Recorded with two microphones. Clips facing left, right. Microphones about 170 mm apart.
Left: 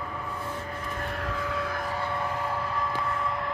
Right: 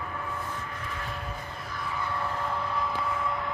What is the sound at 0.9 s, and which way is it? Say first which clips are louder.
Vehicle: left 7 dB; 55° left (ahead or behind).